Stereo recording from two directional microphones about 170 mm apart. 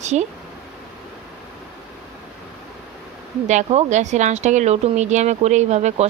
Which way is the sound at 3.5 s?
40° right (ahead or behind).